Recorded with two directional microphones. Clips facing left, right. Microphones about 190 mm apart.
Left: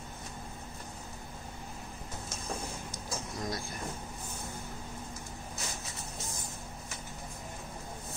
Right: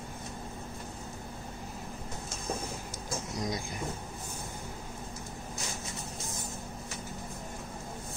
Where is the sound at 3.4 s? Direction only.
20° right (ahead or behind).